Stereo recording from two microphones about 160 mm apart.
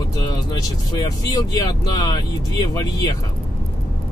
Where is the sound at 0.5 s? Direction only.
25° left (ahead or behind).